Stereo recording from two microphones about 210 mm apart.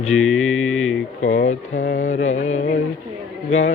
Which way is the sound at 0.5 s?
Centre (ahead or behind).